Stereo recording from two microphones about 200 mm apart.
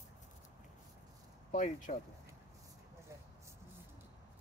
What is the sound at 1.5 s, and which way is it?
Speech, 40° left (ahead or behind).